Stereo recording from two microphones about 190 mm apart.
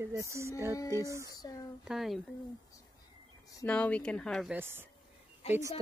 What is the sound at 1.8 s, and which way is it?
Speech, centre (ahead or behind).